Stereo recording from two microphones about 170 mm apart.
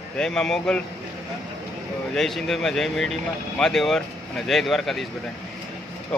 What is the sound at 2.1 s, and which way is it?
Speech, 5° left (ahead or behind).